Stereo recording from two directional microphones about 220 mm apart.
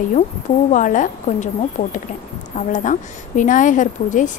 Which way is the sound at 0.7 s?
35° left (ahead or behind).